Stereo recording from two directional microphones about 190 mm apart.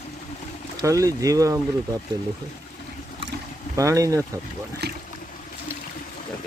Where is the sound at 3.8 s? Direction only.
15° right (ahead or behind).